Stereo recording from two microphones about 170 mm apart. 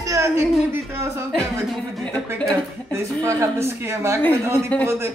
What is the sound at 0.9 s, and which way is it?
Speech, 15° right (ahead or behind).